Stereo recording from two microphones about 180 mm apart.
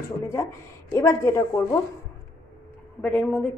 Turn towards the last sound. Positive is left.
turn(degrees=5)  # may be behind; listen again after turning